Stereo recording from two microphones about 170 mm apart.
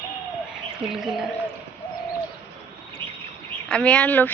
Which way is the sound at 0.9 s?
Centre (ahead or behind).